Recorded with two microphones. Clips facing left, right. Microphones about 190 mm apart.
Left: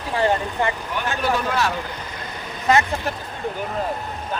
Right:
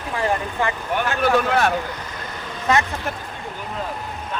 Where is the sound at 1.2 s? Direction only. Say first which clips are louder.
Right 4 dB; 55° right (ahead or behind).